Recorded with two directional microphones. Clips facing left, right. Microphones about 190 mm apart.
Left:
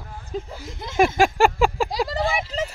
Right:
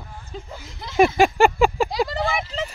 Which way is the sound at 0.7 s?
50° left (ahead or behind).